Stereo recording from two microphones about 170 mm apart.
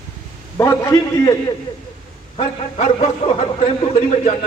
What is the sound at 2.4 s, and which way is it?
A man's voice, 40° left (ahead or behind).